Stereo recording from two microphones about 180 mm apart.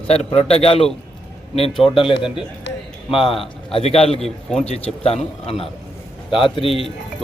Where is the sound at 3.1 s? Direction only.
30° left (ahead or behind).